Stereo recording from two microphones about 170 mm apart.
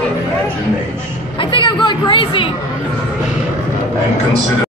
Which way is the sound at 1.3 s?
30° left (ahead or behind).